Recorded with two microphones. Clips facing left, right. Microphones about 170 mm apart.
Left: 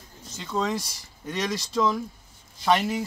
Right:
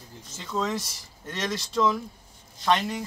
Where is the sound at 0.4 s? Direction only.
Centre (ahead or behind).